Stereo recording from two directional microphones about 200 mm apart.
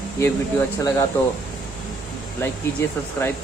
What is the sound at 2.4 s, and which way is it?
Speech, 10° left (ahead or behind).